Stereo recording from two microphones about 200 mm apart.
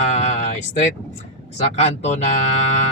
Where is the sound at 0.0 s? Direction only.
35° left (ahead or behind).